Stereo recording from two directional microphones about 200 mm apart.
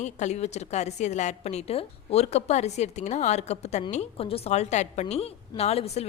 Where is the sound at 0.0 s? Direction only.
35° left (ahead or behind).